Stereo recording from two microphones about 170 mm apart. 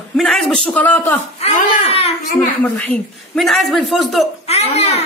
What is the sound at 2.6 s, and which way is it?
A woman's voice, 10° left (ahead or behind).